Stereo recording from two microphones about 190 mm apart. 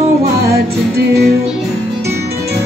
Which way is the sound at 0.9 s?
60° right (ahead or behind).